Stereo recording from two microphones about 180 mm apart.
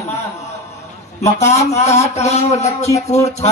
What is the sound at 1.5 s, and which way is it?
A man's voice, 35° left (ahead or behind).